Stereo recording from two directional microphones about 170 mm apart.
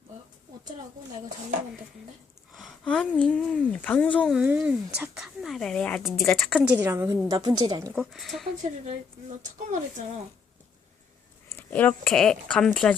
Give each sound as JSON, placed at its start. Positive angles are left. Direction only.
{"t": 2.5, "sound": "a woman's voice", "side_deg": 0}
{"t": 6.6, "sound": "a woman's voice", "side_deg": -10}
{"t": 7.9, "sound": "a woman's voice", "side_deg": 0}
{"t": 9.6, "sound": "speech", "side_deg": -45}
{"t": 11.5, "sound": "a woman's voice", "side_deg": 10}